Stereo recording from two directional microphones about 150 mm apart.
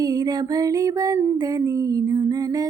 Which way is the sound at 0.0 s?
25° right (ahead or behind).